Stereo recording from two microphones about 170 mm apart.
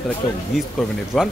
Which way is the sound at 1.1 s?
Centre (ahead or behind).